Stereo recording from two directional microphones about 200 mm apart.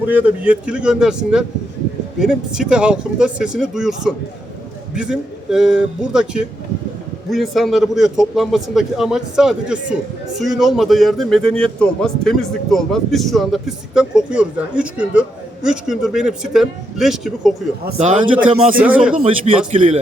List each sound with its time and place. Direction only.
0.1 s a man's voice: 10° right (ahead or behind)
17.9 s a man's voice: 35° right (ahead or behind)
18.8 s speech: 10° right (ahead or behind)
19.2 s a man's voice: 30° right (ahead or behind)